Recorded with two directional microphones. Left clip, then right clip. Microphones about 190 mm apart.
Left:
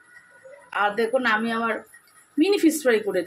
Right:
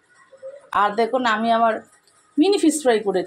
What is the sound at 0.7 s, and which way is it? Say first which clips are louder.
Speech: right 4 dB; 20° right (ahead or behind).